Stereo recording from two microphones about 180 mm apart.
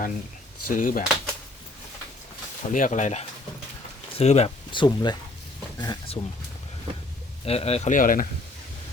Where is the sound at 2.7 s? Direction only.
45° left (ahead or behind); by 6.2 s 25° left (ahead or behind).